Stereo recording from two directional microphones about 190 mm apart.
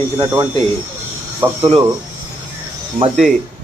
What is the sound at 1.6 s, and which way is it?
Speech, 20° right (ahead or behind).